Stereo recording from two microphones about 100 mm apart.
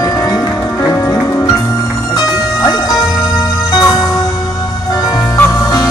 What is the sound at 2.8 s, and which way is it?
Music, 5° right (ahead or behind).